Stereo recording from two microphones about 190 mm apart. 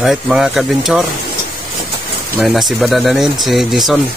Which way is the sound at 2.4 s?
Centre (ahead or behind).